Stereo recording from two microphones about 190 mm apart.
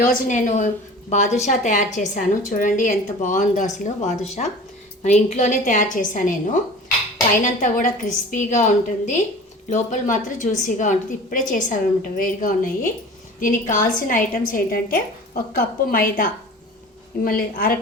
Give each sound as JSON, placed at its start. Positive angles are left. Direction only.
{"t": 0.0, "sound": "a woman's voice", "side_deg": 45}